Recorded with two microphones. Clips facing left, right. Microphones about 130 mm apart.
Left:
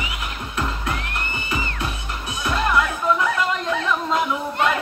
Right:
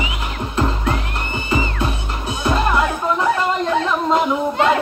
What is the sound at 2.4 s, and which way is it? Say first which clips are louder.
Music: right 3 dB; 30° right (ahead or behind).